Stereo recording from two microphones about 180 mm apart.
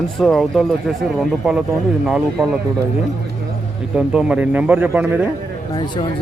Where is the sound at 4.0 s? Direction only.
5° right (ahead or behind).